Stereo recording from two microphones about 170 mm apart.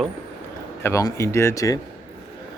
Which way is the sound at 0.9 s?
15° left (ahead or behind).